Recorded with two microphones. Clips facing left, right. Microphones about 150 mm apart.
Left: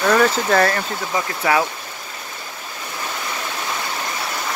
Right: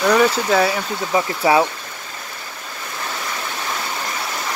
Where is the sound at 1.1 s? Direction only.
25° right (ahead or behind).